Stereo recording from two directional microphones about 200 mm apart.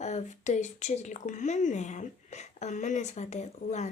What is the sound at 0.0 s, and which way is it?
A woman's voice, 35° left (ahead or behind).